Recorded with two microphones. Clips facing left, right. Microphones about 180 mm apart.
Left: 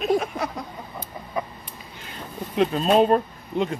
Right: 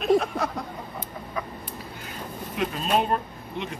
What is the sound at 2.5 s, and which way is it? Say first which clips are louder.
Speech: left 6 dB; 30° left (ahead or behind).